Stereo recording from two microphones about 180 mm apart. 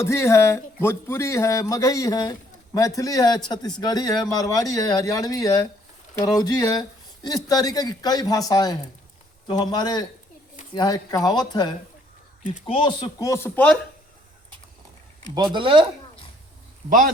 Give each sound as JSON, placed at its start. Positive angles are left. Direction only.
{"t": 0.0, "sound": "speech", "side_deg": 15}
{"t": 12.4, "sound": "speech", "side_deg": 45}
{"t": 15.5, "sound": "speech", "side_deg": -30}